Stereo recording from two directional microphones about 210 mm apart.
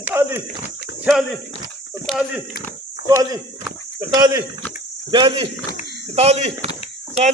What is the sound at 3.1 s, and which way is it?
Speech, 15° right (ahead or behind).